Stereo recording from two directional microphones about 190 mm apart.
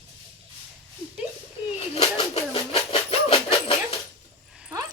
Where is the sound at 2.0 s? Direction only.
30° left (ahead or behind).